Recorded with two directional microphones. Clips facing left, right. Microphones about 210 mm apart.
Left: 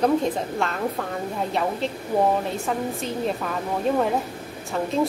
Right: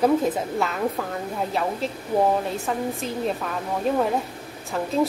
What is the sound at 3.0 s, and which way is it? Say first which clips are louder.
Speech: even; centre (ahead or behind).